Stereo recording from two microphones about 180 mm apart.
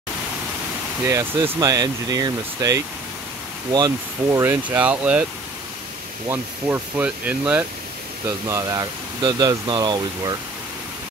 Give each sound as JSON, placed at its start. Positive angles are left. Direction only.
{"t": 1.0, "sound": "speech", "side_deg": -15}
{"t": 6.2, "sound": "speech", "side_deg": -10}